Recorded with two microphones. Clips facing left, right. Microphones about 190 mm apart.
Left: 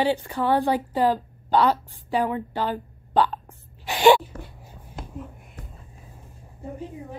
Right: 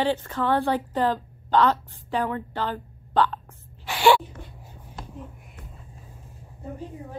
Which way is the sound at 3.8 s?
20° left (ahead or behind).